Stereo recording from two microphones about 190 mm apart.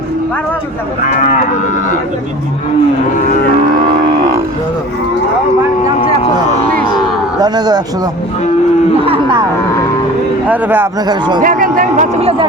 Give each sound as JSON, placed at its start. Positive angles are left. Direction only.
{"t": 7.4, "sound": "speech", "side_deg": -20}
{"t": 10.5, "sound": "speech", "side_deg": -10}
{"t": 11.1, "sound": "speech", "side_deg": -20}
{"t": 11.4, "sound": "speech", "side_deg": -45}